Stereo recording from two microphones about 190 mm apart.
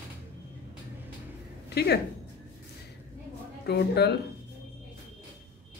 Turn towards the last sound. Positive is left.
turn(degrees=60)  # may be behind; listen again after turning